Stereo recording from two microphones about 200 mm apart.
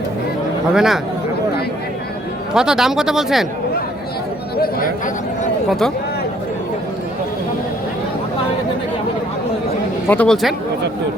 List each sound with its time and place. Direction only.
0.7 s speech: 5° right (ahead or behind)
2.5 s speech: 5° right (ahead or behind)
4.5 s a sound: 50° left (ahead or behind)
10.1 s speech: 5° left (ahead or behind)